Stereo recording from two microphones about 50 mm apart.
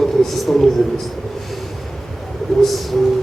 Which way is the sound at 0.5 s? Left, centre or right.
Centre.